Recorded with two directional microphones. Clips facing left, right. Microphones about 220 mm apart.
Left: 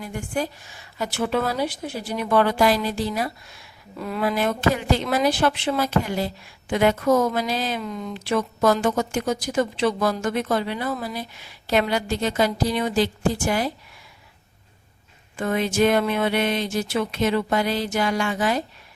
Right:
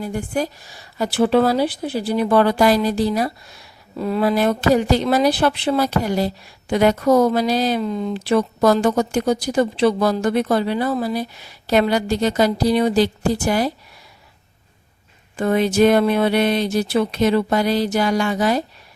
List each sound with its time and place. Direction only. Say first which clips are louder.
0.0 s a woman's voice: right 4 dB; 35° right (ahead or behind)
15.4 s a woman's voice: right 5 dB; 35° right (ahead or behind)